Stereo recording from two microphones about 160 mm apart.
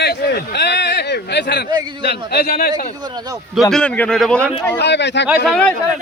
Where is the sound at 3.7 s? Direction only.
5° left (ahead or behind).